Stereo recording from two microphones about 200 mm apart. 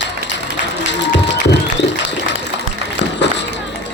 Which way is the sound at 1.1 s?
60° left (ahead or behind).